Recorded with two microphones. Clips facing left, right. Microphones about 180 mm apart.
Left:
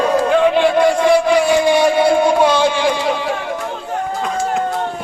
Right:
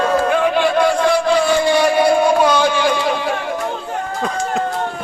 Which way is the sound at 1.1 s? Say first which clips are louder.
Left 2 dB; 15° left (ahead or behind).